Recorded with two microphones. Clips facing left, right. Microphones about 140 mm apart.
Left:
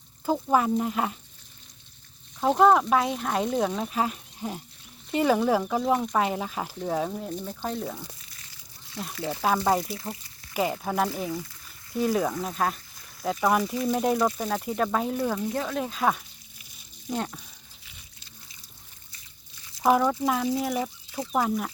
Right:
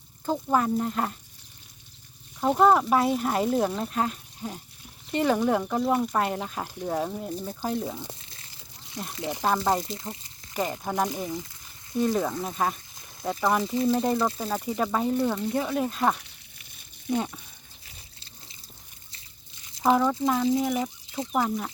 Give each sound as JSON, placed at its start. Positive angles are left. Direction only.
{"t": 0.3, "sound": "speech", "side_deg": 10}
{"t": 2.4, "sound": "speech", "side_deg": 0}
{"t": 8.0, "sound": "a sound", "side_deg": -25}
{"t": 9.1, "sound": "speech", "side_deg": -15}
{"t": 9.4, "sound": "speech", "side_deg": 5}
{"t": 9.8, "sound": "speech", "side_deg": -20}
{"t": 10.5, "sound": "speech", "side_deg": 5}
{"t": 10.9, "sound": "speech", "side_deg": -15}
{"t": 12.0, "sound": "speech", "side_deg": 0}
{"t": 13.6, "sound": "speech", "side_deg": -25}
{"t": 13.9, "sound": "speech", "side_deg": 0}
{"t": 16.2, "sound": "a sound", "side_deg": -60}
{"t": 17.2, "sound": "speech", "side_deg": -5}
{"t": 19.8, "sound": "speech", "side_deg": 0}